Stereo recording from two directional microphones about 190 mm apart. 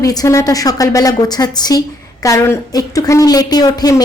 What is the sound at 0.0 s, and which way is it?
A woman's voice, 20° left (ahead or behind).